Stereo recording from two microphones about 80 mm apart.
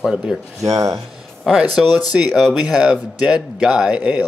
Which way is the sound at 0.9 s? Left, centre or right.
Centre.